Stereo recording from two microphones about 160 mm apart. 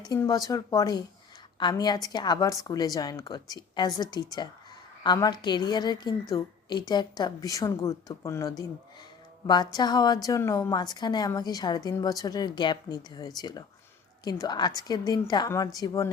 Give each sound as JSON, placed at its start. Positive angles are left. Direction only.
{"t": 0.1, "sound": "a woman's voice", "side_deg": 20}
{"t": 9.7, "sound": "a woman's voice", "side_deg": 25}